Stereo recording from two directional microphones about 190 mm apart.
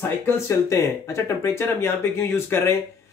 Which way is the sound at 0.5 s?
15° left (ahead or behind).